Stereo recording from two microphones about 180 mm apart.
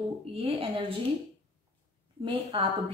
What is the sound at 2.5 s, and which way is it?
Speech, 30° right (ahead or behind).